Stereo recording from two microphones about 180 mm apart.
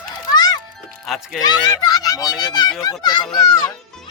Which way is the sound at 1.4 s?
20° left (ahead or behind).